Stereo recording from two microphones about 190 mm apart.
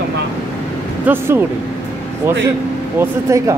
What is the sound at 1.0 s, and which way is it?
Speech, 10° right (ahead or behind).